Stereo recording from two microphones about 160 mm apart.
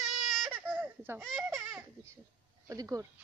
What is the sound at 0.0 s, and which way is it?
Baby cry, centre (ahead or behind).